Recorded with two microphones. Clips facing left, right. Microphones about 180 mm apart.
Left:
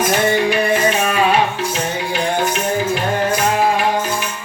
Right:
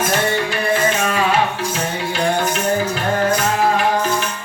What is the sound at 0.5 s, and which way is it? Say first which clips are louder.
Music: left 2 dB; 20° left (ahead or behind).